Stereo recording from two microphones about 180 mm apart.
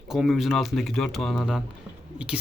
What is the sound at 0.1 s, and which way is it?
Speech, centre (ahead or behind).